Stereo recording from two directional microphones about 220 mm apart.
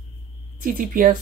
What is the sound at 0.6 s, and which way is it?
Speech, 40° right (ahead or behind).